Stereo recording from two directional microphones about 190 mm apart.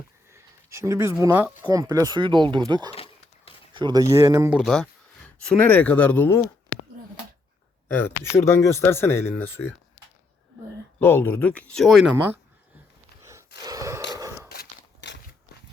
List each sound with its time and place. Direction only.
0.3 s a sound: 15° right (ahead or behind)
1.2 s speech: 10° right (ahead or behind)
2.9 s a sound: 30° left (ahead or behind)
3.8 s speech: 20° right (ahead or behind)
4.5 s speech: centre (ahead or behind)
7.9 s speech: 10° left (ahead or behind)
11.0 s speech: 10° left (ahead or behind); by 12.4 s 10° right (ahead or behind)
13.7 s gasp: 15° right (ahead or behind)
14.1 s a sound: 15° right (ahead or behind)
14.5 s walk: 60° left (ahead or behind)